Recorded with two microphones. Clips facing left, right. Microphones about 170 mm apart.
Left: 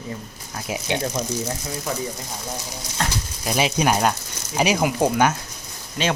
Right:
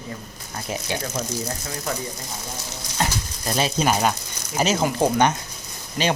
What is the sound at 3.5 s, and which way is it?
Speech, 15° left (ahead or behind).